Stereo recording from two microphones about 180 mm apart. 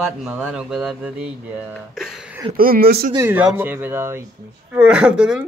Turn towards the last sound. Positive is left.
turn(degrees=-5)  # may be behind; listen again after turning